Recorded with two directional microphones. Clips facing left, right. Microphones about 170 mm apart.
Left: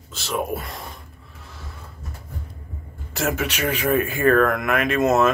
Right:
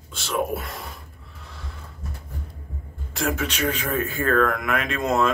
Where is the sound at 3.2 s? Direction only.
5° left (ahead or behind).